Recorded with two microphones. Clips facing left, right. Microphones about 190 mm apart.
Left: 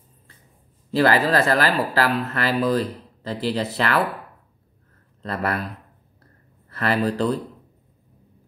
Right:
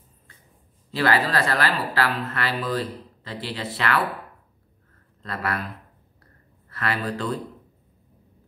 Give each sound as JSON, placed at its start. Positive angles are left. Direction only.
{"t": 0.9, "sound": "speech", "side_deg": 40}
{"t": 5.2, "sound": "speech", "side_deg": 40}
{"t": 6.7, "sound": "speech", "side_deg": 40}